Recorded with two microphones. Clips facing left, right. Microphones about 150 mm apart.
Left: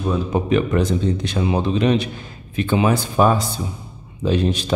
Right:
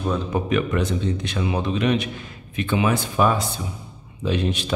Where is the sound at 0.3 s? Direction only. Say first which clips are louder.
Left 5 dB; 30° left (ahead or behind).